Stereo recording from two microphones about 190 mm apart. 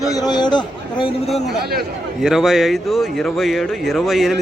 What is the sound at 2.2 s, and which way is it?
A man's voice, centre (ahead or behind).